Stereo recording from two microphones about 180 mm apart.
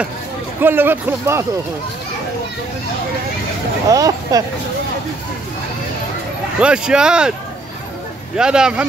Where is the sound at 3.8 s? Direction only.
20° right (ahead or behind).